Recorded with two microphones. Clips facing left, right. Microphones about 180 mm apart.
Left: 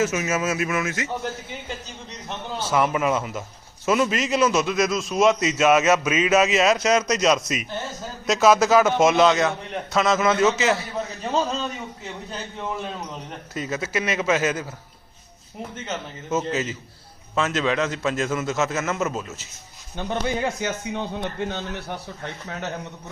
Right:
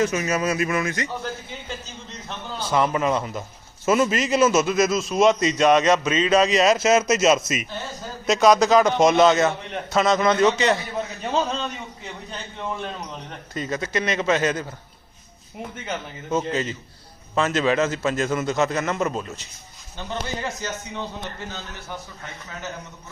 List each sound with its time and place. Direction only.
0.0 s a man's voice: 5° left (ahead or behind)
2.6 s a man's voice: 10° left (ahead or behind)
16.5 s a man's voice: 5° left (ahead or behind)
20.0 s a man's voice: 55° left (ahead or behind)